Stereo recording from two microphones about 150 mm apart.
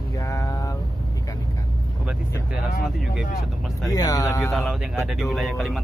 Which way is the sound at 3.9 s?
25° left (ahead or behind).